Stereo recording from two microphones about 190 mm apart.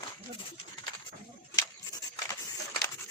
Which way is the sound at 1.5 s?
20° left (ahead or behind).